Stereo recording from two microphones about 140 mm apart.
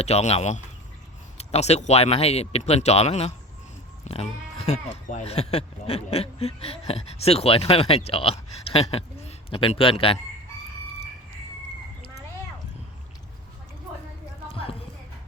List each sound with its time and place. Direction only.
0.0 s speech: 50° left (ahead or behind)
14.5 s clip-clop: 40° left (ahead or behind)